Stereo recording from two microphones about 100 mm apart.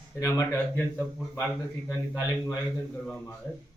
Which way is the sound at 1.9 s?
30° left (ahead or behind).